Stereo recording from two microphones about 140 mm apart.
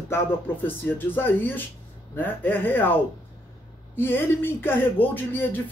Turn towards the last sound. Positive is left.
turn(degrees=15)  # may be behind; listen again after turning